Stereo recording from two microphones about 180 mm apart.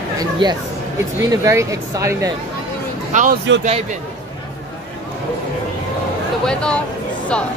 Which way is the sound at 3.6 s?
40° right (ahead or behind).